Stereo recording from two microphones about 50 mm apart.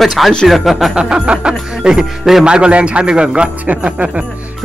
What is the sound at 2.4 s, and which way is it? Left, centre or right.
Speech, centre.